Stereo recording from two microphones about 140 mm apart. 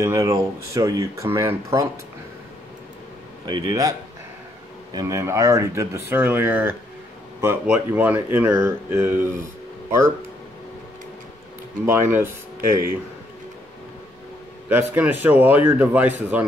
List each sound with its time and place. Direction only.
0.0 s speech: 20° right (ahead or behind)
3.4 s speech: 25° right (ahead or behind)
4.9 s speech: 25° right (ahead or behind)
11.8 s speech: 15° right (ahead or behind)
14.7 s speech: 15° right (ahead or behind)